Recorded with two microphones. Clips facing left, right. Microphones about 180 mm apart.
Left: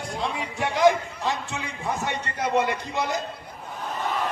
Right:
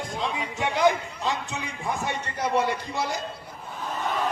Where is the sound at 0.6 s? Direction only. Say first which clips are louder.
Left 2 dB; 15° right (ahead or behind).